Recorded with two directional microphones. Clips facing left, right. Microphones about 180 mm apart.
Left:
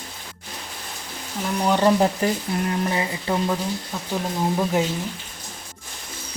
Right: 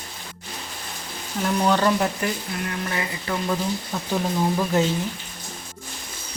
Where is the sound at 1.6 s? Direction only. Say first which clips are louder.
Left 1 dB; 15° left (ahead or behind).